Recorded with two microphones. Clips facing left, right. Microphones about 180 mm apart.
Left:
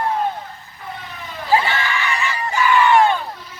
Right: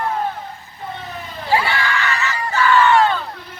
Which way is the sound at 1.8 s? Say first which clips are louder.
Right 1 dB; 15° left (ahead or behind).